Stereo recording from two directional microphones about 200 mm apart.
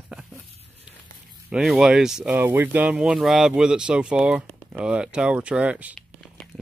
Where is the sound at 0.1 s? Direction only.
5° right (ahead or behind).